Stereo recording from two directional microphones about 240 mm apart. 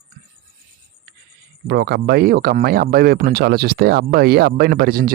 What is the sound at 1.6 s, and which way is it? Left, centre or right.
Speech, right.